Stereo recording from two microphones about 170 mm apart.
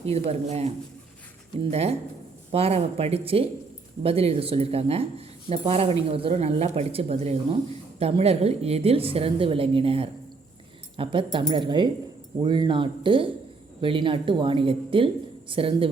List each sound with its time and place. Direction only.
0.0 s speech: 40° right (ahead or behind)
1.7 s speech: 40° right (ahead or behind)